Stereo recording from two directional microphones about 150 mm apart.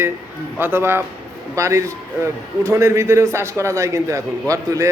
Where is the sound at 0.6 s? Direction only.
15° right (ahead or behind).